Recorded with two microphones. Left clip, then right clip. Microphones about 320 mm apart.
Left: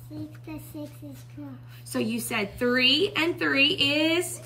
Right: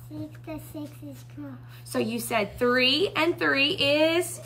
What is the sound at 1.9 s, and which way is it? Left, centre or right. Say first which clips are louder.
A woman's voice: right 2 dB; right.